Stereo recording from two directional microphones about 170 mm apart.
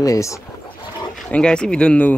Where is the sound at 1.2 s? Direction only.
5° left (ahead or behind).